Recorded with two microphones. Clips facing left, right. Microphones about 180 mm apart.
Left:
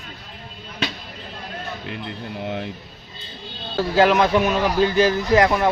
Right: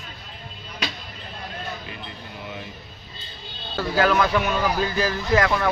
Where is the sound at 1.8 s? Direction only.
65° left (ahead or behind).